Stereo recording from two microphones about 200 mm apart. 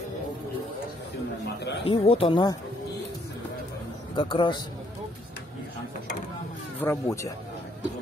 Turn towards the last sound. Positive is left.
turn(degrees=15)  # may be behind; listen again after turning